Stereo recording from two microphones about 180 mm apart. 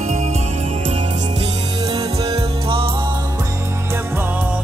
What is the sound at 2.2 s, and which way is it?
Music, 30° right (ahead or behind).